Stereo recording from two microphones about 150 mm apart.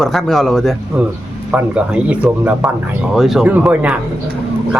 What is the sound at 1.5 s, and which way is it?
Speech, 10° right (ahead or behind).